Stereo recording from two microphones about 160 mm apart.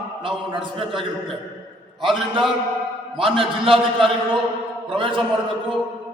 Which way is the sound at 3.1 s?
35° right (ahead or behind).